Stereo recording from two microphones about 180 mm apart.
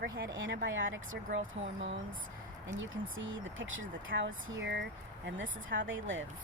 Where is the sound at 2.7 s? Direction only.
90° right.